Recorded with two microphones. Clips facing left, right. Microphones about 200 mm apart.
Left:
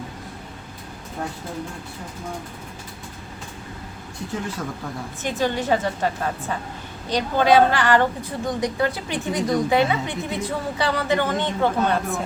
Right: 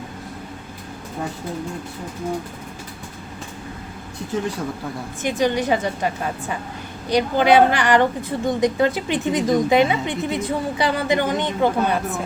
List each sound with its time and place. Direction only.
5.2 s a woman's voice: 15° right (ahead or behind)
7.1 s a woman's voice: 10° right (ahead or behind)